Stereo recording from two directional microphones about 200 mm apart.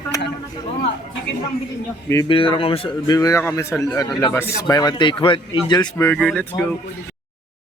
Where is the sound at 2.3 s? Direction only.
25° left (ahead or behind).